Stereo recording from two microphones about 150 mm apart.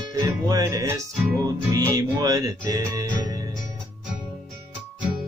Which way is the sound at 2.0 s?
25° right (ahead or behind).